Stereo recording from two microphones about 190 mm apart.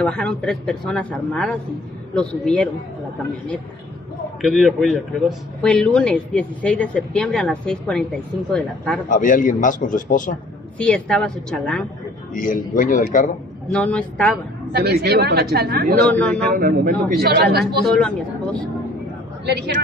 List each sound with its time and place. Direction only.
0.0 s speech: 5° left (ahead or behind)
4.4 s speech: centre (ahead or behind)
9.1 s a man's voice: 45° left (ahead or behind)
10.8 s speech: 5° left (ahead or behind)
12.4 s a man's voice: 45° left (ahead or behind)
13.7 s speech: 5° left (ahead or behind)
14.7 s a woman's voice: 60° right (ahead or behind)
17.9 s speech: 5° left (ahead or behind)
19.4 s a woman's voice: 60° right (ahead or behind)